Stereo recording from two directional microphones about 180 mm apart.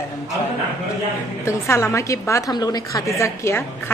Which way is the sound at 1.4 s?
15° left (ahead or behind).